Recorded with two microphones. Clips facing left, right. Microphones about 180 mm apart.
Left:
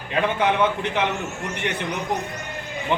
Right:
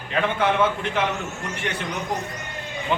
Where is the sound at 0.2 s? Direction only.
15° left (ahead or behind).